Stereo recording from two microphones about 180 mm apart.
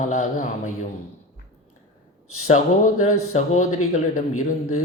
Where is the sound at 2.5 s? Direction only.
45° left (ahead or behind).